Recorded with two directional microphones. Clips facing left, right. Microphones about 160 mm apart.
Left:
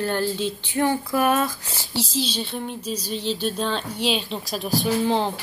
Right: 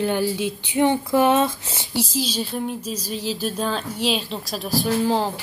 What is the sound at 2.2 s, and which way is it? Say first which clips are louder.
Speech: right 2 dB; 5° right (ahead or behind).